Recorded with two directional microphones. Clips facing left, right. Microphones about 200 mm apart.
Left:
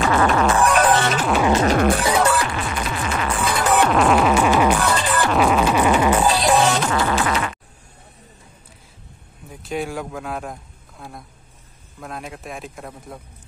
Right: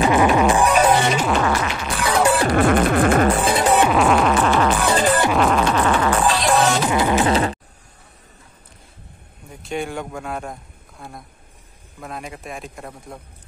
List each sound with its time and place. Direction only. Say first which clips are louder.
0.0 s music: right 2 dB; 15° right (ahead or behind)
1.6 s music: left 9 dB; 50° left (ahead or behind)
2.5 s music: right 10 dB; 55° right (ahead or behind)
3.4 s music: right 3 dB; 30° right (ahead or behind)
3.7 s music: left 2 dB; 5° right (ahead or behind); by 4.7 s 10° left (ahead or behind)
4.9 s music: right 4 dB; 40° right (ahead or behind)
5.3 s music: even; 5° left (ahead or behind)
6.9 s music: right 3 dB; 20° right (ahead or behind)
9.5 s a man's voice: even; centre (ahead or behind)